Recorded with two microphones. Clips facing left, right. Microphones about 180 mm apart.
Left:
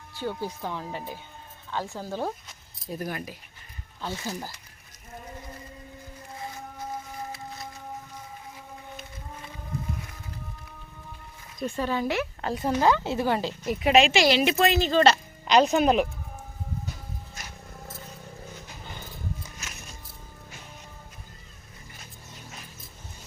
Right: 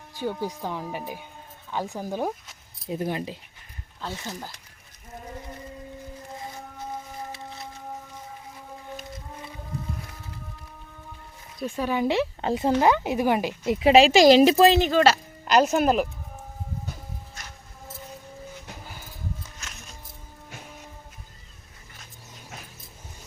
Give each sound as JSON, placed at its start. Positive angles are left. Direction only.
{"t": 0.1, "sound": "speech", "side_deg": -15}
{"t": 4.0, "sound": "speech", "side_deg": 5}
{"t": 11.6, "sound": "speech", "side_deg": -10}
{"t": 13.9, "sound": "speech", "side_deg": -35}
{"t": 14.8, "sound": "speech", "side_deg": -10}
{"t": 19.4, "sound": "music", "side_deg": 10}